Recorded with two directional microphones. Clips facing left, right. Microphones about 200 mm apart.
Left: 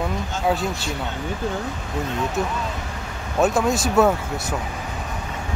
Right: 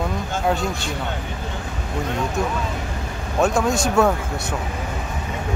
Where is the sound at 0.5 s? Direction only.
Centre (ahead or behind).